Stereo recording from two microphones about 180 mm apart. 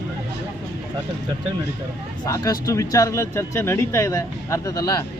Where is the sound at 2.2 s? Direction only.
20° left (ahead or behind).